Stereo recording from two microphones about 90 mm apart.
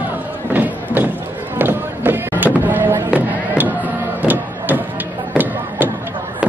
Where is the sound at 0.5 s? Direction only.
20° right (ahead or behind).